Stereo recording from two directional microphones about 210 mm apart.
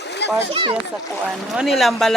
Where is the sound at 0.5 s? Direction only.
25° right (ahead or behind).